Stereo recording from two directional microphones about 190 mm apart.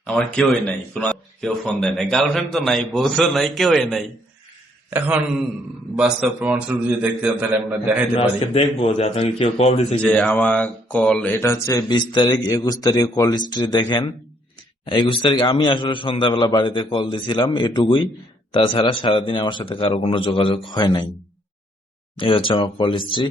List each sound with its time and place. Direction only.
0.0 s speech: 5° left (ahead or behind)
4.9 s a man's voice: 10° right (ahead or behind)
8.1 s a man's voice: 30° left (ahead or behind)
10.0 s speech: 5° left (ahead or behind); by 21.1 s 25° left (ahead or behind)
22.2 s speech: 25° left (ahead or behind)